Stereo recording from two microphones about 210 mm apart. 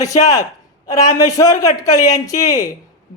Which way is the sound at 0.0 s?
15° left (ahead or behind).